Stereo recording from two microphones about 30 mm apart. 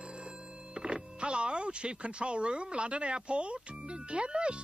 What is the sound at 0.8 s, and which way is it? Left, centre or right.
Speech, right.